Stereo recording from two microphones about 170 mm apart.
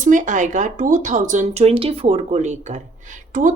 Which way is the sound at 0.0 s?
50° right (ahead or behind).